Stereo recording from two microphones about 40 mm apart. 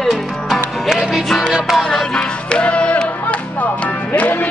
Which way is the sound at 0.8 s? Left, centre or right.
Centre.